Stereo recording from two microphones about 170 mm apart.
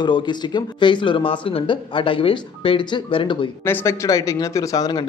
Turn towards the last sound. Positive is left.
turn(degrees=20)  # may be behind; listen again after turning